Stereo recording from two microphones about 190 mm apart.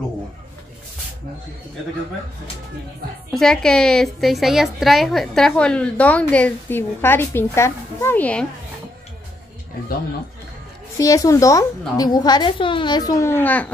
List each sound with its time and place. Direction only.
3.3 s a woman's voice: centre (ahead or behind)
11.0 s a woman's voice: 20° left (ahead or behind)